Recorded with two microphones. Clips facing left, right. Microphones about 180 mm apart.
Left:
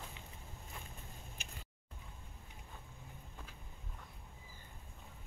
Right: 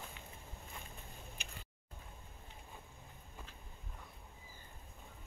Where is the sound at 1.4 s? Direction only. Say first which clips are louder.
Even; 45° left (ahead or behind).